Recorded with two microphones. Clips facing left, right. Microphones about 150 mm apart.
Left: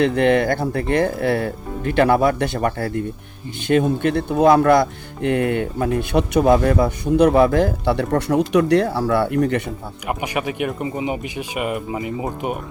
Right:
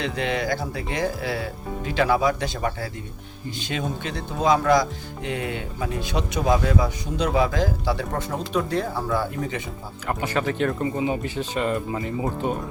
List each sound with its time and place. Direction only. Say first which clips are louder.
0.0 s speech: left 10 dB; 55° left (ahead or behind)
10.1 s speech: left 1 dB; 15° left (ahead or behind)